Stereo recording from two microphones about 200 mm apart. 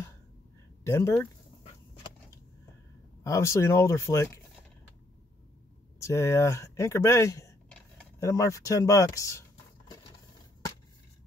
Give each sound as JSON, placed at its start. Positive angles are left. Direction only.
{"t": 0.8, "sound": "speech", "side_deg": 15}
{"t": 3.3, "sound": "speech", "side_deg": 15}
{"t": 5.9, "sound": "speech", "side_deg": 15}